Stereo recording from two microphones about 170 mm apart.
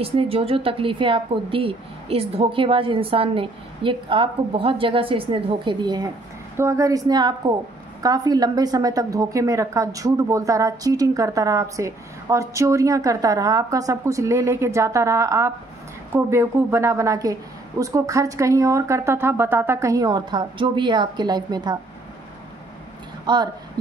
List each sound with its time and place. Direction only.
0.0 s a woman's voice: 35° right (ahead or behind)
23.2 s speech: 25° right (ahead or behind)